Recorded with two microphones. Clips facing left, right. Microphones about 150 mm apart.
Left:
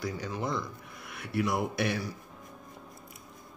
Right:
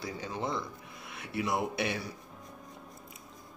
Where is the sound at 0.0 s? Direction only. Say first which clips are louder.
Left 2 dB; 25° right (ahead or behind).